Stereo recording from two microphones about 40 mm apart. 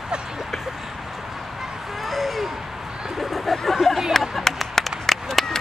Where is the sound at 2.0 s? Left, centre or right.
Centre.